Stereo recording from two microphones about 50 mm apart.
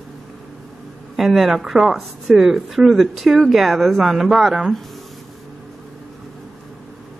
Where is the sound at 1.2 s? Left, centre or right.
Centre.